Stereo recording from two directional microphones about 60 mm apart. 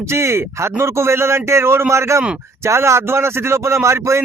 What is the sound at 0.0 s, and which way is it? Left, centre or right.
Speech, right.